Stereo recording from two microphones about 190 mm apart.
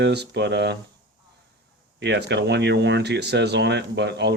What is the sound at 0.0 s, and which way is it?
Speech, 60° right (ahead or behind).